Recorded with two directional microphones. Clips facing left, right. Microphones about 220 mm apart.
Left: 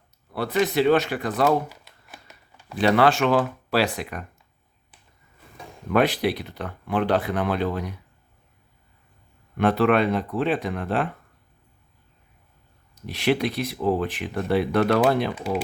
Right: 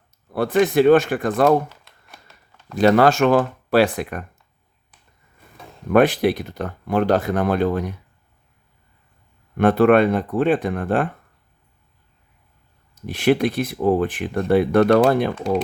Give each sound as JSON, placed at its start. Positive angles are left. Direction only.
{"t": 0.3, "sound": "speech", "side_deg": -50}
{"t": 1.7, "sound": "shuffling cards", "side_deg": 0}
{"t": 2.7, "sound": "speech", "side_deg": -45}
{"t": 5.9, "sound": "speech", "side_deg": -50}
{"t": 9.6, "sound": "speech", "side_deg": -50}
{"t": 13.1, "sound": "speech", "side_deg": -50}